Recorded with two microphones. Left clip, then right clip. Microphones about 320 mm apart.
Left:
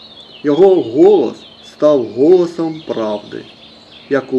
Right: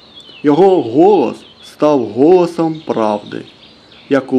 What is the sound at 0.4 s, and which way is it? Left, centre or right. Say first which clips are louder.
Speech: even; right.